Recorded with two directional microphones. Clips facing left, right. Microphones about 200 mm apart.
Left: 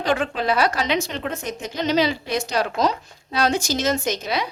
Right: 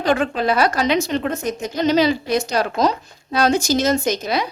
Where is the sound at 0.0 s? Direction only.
45° right (ahead or behind).